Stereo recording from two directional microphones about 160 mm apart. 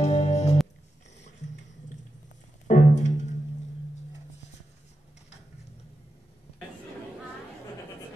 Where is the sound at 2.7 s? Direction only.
50° left (ahead or behind).